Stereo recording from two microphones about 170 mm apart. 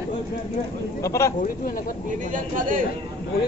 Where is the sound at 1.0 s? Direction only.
15° left (ahead or behind).